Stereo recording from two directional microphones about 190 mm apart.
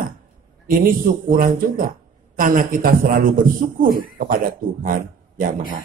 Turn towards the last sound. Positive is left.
turn(degrees=-45)  # may be behind; listen again after turning